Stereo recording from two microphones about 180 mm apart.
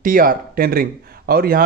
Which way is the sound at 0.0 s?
50° right (ahead or behind).